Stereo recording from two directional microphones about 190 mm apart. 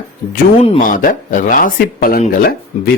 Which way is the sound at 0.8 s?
45° left (ahead or behind).